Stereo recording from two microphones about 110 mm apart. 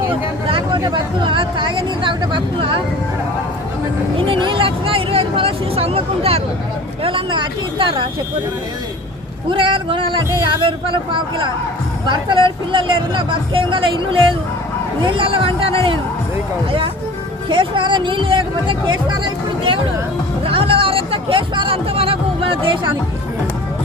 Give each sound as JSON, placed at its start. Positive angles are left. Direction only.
{"t": 0.4, "sound": "a sound", "side_deg": -55}
{"t": 0.8, "sound": "speech", "side_deg": -40}
{"t": 4.3, "sound": "speech", "side_deg": -50}
{"t": 9.5, "sound": "speech", "side_deg": -50}
{"t": 17.5, "sound": "speech", "side_deg": -50}
{"t": 20.4, "sound": "speech", "side_deg": -55}